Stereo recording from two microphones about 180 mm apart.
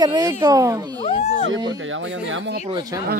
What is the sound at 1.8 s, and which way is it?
Speech, 90° right.